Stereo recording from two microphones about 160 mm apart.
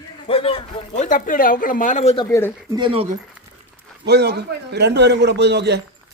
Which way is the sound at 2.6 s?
30° right (ahead or behind).